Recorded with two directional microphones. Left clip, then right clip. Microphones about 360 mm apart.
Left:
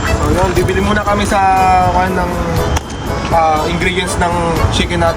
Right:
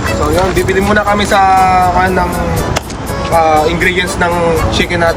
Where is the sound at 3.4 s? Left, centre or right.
Centre.